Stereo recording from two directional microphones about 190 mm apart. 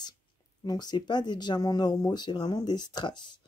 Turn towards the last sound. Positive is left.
turn(degrees=25)  # may be behind; listen again after turning